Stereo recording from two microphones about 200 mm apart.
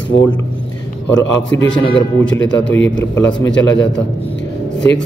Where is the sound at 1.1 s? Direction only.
70° left (ahead or behind).